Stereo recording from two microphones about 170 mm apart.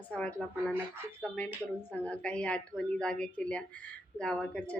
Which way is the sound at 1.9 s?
10° left (ahead or behind).